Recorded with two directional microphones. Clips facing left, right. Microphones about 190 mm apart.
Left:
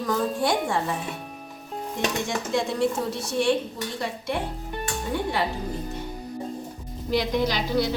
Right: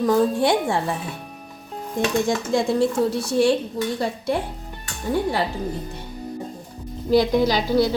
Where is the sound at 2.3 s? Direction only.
35° right (ahead or behind).